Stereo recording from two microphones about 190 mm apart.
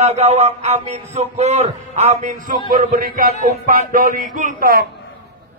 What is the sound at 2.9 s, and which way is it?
A man's voice, 50° right (ahead or behind).